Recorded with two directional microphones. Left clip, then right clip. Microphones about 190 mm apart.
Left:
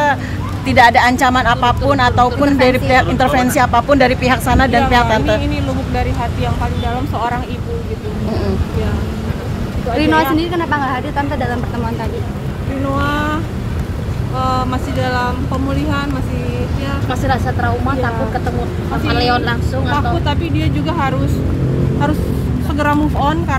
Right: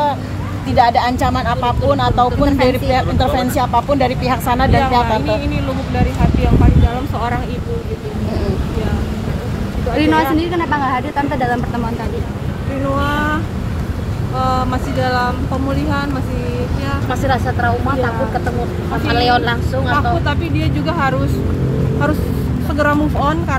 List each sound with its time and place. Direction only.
0.7 s speech: 35° left (ahead or behind)
9.9 s speech: 20° right (ahead or behind)
14.4 s speech: centre (ahead or behind)
17.1 s speech: 40° left (ahead or behind)
19.1 s speech: 45° left (ahead or behind)
20.2 s speech: 5° left (ahead or behind)
22.8 s speech: 15° left (ahead or behind)